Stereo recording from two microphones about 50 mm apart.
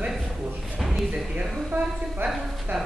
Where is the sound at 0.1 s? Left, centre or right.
Centre.